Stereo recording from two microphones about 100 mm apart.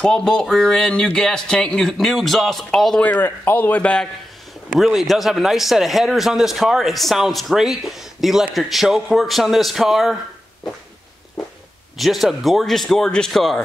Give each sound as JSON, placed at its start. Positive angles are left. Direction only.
{"t": 0.0, "sound": "speech", "side_deg": 5}
{"t": 3.0, "sound": "speech", "side_deg": 20}
{"t": 4.7, "sound": "speech", "side_deg": 0}
{"t": 12.0, "sound": "speech", "side_deg": 0}